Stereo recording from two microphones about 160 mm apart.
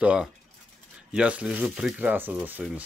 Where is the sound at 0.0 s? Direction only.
5° right (ahead or behind).